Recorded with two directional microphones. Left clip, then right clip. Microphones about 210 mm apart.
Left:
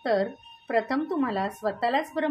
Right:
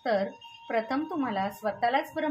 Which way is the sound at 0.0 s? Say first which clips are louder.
Left 2 dB; 30° left (ahead or behind).